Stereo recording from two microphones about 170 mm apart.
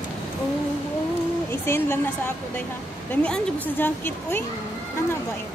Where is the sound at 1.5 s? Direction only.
15° left (ahead or behind).